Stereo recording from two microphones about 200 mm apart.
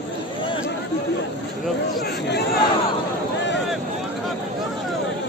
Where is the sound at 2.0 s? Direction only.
60° left (ahead or behind).